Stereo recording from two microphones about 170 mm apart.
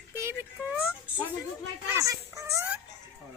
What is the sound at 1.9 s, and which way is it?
Speech, 20° right (ahead or behind).